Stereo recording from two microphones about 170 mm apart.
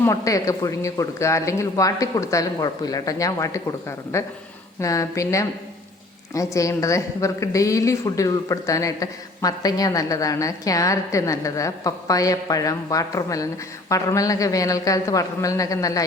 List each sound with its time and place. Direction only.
0.0 s a woman's voice: 20° left (ahead or behind)